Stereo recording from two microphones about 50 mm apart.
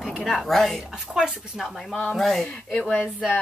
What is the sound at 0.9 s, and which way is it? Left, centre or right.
Speech, centre.